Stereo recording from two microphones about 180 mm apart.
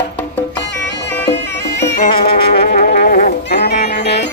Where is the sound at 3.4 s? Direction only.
65° left (ahead or behind).